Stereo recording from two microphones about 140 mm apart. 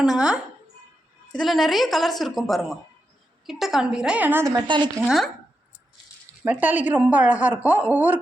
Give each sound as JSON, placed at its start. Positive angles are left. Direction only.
{"t": 1.3, "sound": "a woman's voice", "side_deg": 0}
{"t": 4.5, "sound": "speech", "side_deg": -35}
{"t": 5.0, "sound": "a woman's voice", "side_deg": 0}
{"t": 6.4, "sound": "a woman's voice", "side_deg": -10}